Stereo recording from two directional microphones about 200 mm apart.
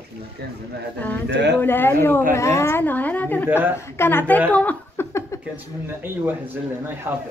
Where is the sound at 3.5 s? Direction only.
10° right (ahead or behind).